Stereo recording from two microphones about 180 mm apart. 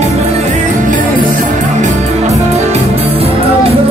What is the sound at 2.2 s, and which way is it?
Music, 40° right (ahead or behind).